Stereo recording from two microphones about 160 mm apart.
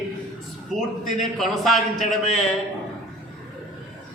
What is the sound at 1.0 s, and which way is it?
A man's voice, centre (ahead or behind).